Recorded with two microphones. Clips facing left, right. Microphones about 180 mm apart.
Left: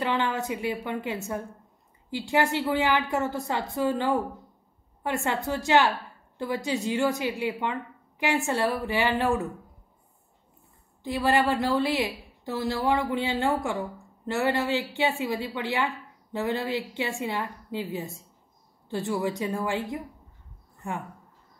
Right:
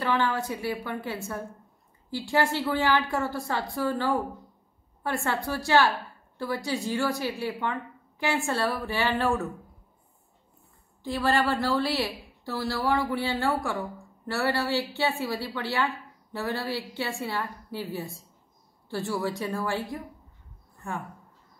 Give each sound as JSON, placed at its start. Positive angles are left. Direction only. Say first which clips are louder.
{"t": 0.0, "sound": "a woman's voice", "louder": "even", "side_deg": 20}
{"t": 11.1, "sound": "a woman's voice", "louder": "left 1 dB", "side_deg": 15}